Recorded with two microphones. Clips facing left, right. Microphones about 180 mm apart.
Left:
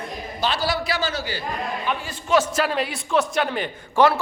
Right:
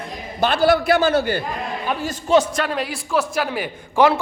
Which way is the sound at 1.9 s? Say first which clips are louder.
Right 4 dB; 40° right (ahead or behind).